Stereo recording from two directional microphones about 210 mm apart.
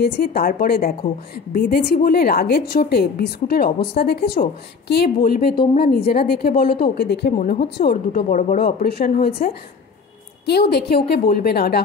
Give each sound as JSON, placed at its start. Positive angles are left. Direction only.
{"t": 0.0, "sound": "a woman's voice", "side_deg": 50}